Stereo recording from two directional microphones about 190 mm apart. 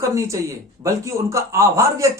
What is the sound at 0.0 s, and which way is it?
A man's voice, 15° right (ahead or behind).